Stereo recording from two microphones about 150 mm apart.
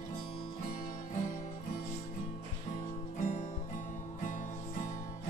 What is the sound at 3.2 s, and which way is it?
Music, 55° left (ahead or behind).